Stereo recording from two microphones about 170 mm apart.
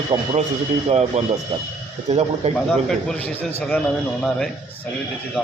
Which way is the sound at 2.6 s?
5° left (ahead or behind).